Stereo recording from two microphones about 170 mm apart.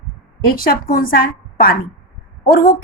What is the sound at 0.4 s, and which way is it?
A woman's voice, 60° left (ahead or behind).